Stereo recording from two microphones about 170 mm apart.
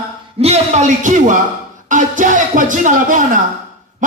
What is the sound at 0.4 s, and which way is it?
A man's voice, 40° right (ahead or behind).